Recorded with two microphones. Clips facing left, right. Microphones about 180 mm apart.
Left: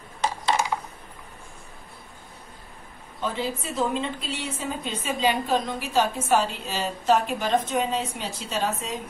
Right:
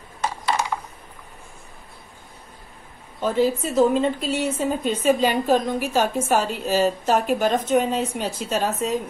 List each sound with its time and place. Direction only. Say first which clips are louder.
3.2 s a woman's voice: right 8 dB; 45° right (ahead or behind)